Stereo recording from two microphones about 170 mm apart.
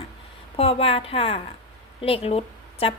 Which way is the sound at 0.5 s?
35° left (ahead or behind).